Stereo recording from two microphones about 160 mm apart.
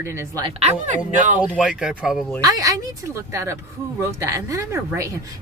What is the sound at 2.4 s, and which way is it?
Speech, 20° right (ahead or behind).